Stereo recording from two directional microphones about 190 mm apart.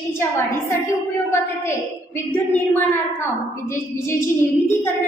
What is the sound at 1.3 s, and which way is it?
A woman's voice, 10° left (ahead or behind).